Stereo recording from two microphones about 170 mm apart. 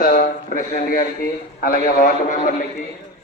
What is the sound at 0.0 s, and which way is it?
A man's voice, 55° left (ahead or behind).